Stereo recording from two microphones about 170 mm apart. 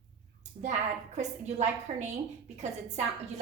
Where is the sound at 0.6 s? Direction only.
45° right (ahead or behind).